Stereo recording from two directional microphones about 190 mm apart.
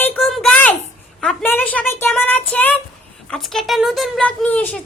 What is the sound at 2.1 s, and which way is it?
Child singing, 10° left (ahead or behind).